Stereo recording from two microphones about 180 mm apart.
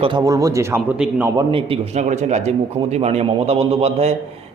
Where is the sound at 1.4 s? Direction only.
30° right (ahead or behind).